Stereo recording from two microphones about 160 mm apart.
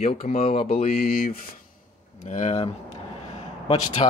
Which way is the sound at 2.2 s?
50° left (ahead or behind).